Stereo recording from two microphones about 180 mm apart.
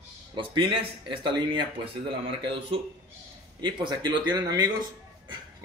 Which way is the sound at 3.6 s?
25° right (ahead or behind).